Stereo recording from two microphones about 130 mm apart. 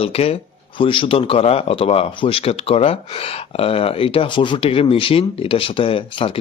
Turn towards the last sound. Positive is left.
turn(degrees=45)  # may be behind; listen again after turning